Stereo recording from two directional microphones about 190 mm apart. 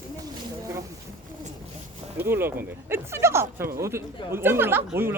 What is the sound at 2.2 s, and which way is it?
Speech, 10° right (ahead or behind).